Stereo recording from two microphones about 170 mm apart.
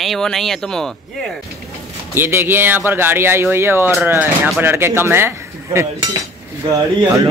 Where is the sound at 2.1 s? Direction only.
15° right (ahead or behind).